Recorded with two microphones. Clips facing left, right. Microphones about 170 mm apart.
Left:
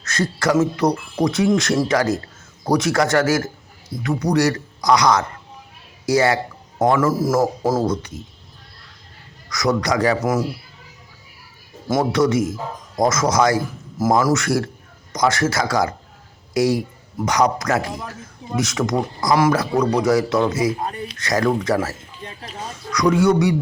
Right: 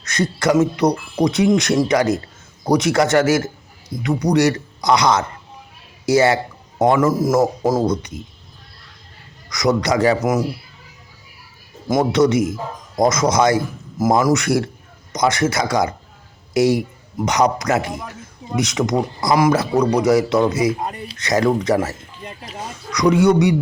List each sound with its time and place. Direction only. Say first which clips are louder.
0.0 s speech: right 2 dB; 20° right (ahead or behind)
9.5 s speech: right 2 dB; 20° right (ahead or behind)
11.9 s speech: right 2 dB; 20° right (ahead or behind)